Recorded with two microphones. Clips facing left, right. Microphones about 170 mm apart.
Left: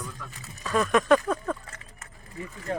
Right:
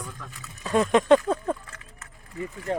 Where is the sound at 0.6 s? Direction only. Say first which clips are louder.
Right 3 dB; 25° right (ahead or behind).